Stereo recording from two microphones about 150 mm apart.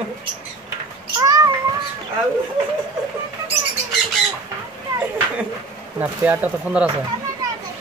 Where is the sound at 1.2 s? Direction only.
25° right (ahead or behind).